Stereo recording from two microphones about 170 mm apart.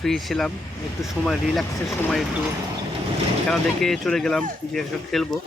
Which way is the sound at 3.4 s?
5° left (ahead or behind).